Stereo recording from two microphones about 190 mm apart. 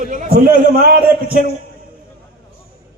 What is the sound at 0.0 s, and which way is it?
Speech, 40° right (ahead or behind).